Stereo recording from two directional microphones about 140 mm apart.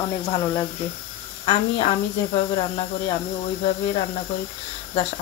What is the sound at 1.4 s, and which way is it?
Speech, 40° left (ahead or behind).